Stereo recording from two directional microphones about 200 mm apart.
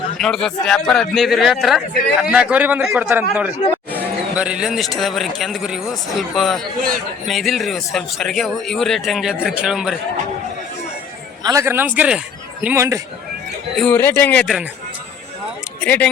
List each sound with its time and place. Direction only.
0.2 s a man's voice: 5° left (ahead or behind)
11.4 s a man's voice: 15° right (ahead or behind)
13.7 s speech: 10° left (ahead or behind)
14.4 s a man's voice: centre (ahead or behind)
15.8 s speech: 10° left (ahead or behind)